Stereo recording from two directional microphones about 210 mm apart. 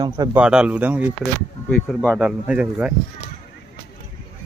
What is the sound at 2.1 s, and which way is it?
Speech, 5° right (ahead or behind).